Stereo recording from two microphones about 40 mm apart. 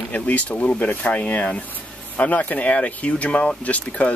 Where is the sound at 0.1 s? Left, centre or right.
Left.